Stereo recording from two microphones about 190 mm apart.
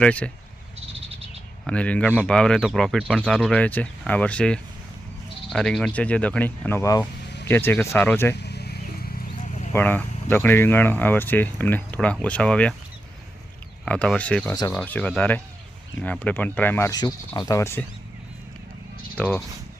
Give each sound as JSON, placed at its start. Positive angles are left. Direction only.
{"t": 0.0, "sound": "speech", "side_deg": 5}
{"t": 1.6, "sound": "speech", "side_deg": 5}
{"t": 8.4, "sound": "a sound", "side_deg": 60}
{"t": 9.4, "sound": "a sound", "side_deg": 40}
{"t": 9.7, "sound": "speech", "side_deg": 10}
{"t": 13.8, "sound": "speech", "side_deg": 5}
{"t": 19.1, "sound": "speech", "side_deg": 10}